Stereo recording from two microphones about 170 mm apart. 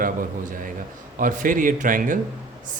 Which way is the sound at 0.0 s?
55° right (ahead or behind).